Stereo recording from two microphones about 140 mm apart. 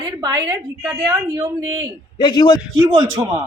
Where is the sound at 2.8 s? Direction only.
30° right (ahead or behind).